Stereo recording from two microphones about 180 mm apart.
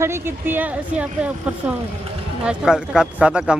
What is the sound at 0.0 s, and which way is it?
Speech, 15° right (ahead or behind).